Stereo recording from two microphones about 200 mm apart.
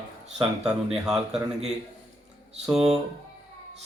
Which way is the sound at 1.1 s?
Centre (ahead or behind).